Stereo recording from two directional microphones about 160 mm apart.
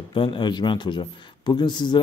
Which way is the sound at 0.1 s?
30° left (ahead or behind).